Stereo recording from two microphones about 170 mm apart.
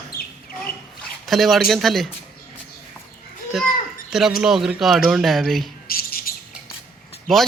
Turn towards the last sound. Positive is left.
turn(degrees=0)  # may be behind; listen again after turning